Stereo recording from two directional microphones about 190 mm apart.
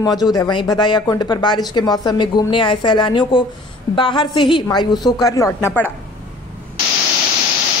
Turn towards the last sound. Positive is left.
turn(degrees=15)  # may be behind; listen again after turning